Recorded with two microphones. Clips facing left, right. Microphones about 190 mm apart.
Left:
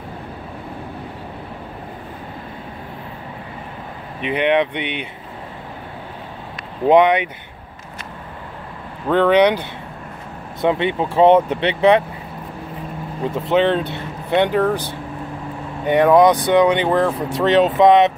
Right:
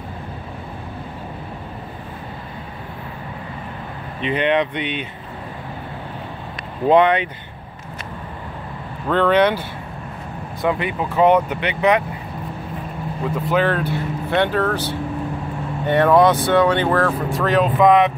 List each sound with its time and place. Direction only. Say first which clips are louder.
4.2 s speech: left 1 dB; 10° left (ahead or behind)
6.9 s speech: left 2 dB; 15° left (ahead or behind)
9.0 s speech: left 2 dB; 15° left (ahead or behind)
13.3 s speech: left 3 dB; 25° left (ahead or behind)